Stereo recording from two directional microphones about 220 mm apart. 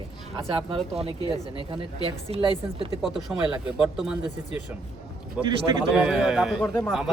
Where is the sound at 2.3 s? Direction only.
25° right (ahead or behind).